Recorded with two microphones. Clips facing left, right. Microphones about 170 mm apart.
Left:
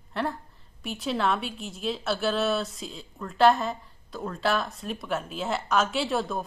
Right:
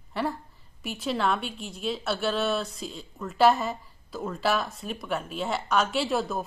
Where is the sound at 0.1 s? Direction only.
Centre (ahead or behind).